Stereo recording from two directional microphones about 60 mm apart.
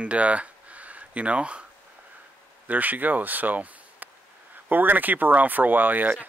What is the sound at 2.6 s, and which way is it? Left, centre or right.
Speech, right.